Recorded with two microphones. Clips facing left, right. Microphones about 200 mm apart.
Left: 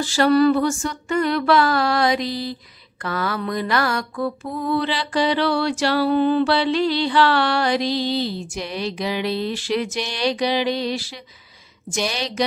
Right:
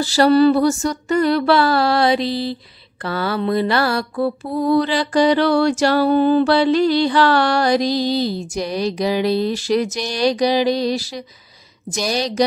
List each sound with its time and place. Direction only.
0.0 s mantra: 35° right (ahead or behind)